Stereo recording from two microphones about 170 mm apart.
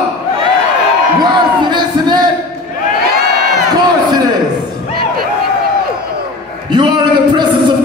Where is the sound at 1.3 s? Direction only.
25° right (ahead or behind).